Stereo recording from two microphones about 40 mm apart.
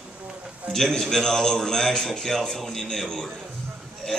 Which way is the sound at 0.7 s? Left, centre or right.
Centre.